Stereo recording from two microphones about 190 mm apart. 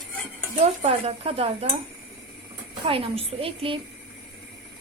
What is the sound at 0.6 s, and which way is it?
A woman's voice, 30° right (ahead or behind).